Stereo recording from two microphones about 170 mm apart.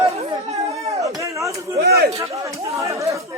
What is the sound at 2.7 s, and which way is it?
Speech, 20° right (ahead or behind).